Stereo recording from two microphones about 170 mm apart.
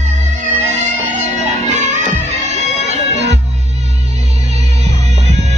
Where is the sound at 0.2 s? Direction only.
45° right (ahead or behind).